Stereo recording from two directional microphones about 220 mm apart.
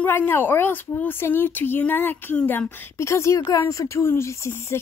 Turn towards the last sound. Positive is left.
turn(degrees=10)  # may be behind; listen again after turning